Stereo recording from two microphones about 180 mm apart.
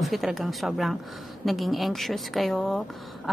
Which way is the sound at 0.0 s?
Centre (ahead or behind).